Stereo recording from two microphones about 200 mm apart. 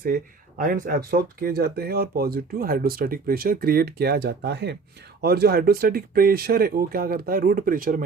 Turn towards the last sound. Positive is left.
turn(degrees=-45)  # may be behind; listen again after turning